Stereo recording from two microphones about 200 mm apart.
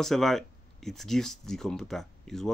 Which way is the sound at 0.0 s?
Centre (ahead or behind).